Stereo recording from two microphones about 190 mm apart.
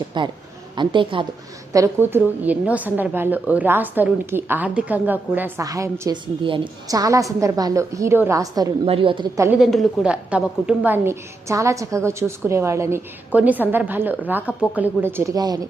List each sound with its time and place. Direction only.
0.1 s speech: 25° right (ahead or behind)
1.7 s a woman's voice: 15° right (ahead or behind)
8.9 s speech: 30° right (ahead or behind)
9.6 s a woman's voice: centre (ahead or behind); by 15.6 s 20° right (ahead or behind)